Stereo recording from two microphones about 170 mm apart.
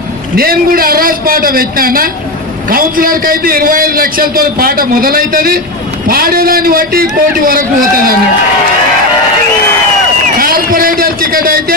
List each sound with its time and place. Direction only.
0.4 s a man's voice: 60° right (ahead or behind)
10.4 s a man's voice: 55° right (ahead or behind)